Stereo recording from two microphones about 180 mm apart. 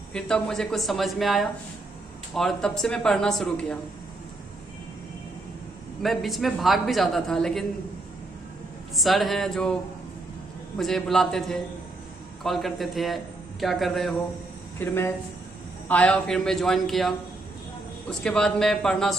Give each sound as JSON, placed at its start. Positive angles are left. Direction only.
{"t": 0.1, "sound": "a man's voice", "side_deg": 5}
{"t": 6.0, "sound": "a man's voice", "side_deg": 0}
{"t": 8.9, "sound": "a man's voice", "side_deg": 0}
{"t": 10.8, "sound": "a man's voice", "side_deg": 0}
{"t": 14.8, "sound": "a man's voice", "side_deg": 10}
{"t": 18.1, "sound": "a man's voice", "side_deg": 5}